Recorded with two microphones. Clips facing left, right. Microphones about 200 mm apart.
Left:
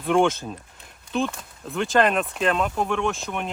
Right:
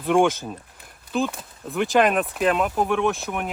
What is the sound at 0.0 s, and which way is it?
Speech, 5° right (ahead or behind).